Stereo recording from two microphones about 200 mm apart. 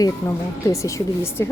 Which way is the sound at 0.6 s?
15° left (ahead or behind).